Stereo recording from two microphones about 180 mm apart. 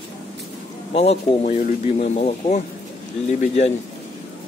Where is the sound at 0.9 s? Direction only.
35° left (ahead or behind).